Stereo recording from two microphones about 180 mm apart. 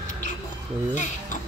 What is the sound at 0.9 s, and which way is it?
Speech, 45° left (ahead or behind).